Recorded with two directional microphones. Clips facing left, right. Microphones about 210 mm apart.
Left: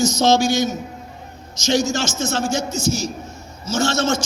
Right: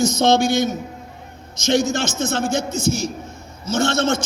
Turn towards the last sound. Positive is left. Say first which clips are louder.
# right 1 dB
turn(degrees=-55)  # may be behind; listen again after turning